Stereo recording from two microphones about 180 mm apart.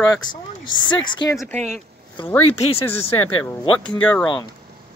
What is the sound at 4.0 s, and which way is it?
Speech, 5° left (ahead or behind).